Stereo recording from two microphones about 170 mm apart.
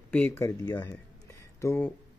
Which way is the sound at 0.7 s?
20° left (ahead or behind).